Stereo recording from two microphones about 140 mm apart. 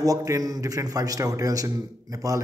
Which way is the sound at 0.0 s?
25° right (ahead or behind).